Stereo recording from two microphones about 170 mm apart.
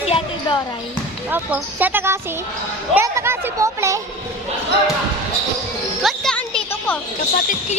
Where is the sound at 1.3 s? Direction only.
10° right (ahead or behind).